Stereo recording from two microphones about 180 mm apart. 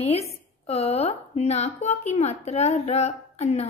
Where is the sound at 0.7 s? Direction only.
35° left (ahead or behind).